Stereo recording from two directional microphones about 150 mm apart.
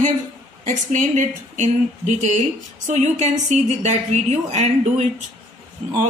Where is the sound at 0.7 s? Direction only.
55° right (ahead or behind).